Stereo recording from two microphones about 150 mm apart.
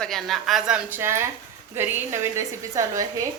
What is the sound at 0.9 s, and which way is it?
A woman's voice, 15° right (ahead or behind).